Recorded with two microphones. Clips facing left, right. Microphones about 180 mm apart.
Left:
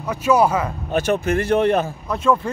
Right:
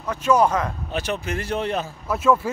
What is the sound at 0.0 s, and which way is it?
Speech, 10° left (ahead or behind).